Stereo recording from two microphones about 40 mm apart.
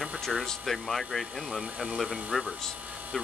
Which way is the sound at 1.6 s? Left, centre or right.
Right.